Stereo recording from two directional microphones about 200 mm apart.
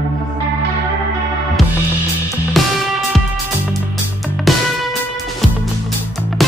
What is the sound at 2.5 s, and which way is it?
Music, centre (ahead or behind).